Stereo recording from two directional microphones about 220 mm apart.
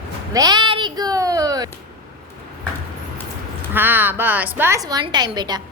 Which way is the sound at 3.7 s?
10° right (ahead or behind).